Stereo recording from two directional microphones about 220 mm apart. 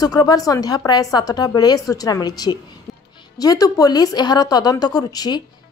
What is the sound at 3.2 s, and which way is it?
A woman's voice, 15° left (ahead or behind).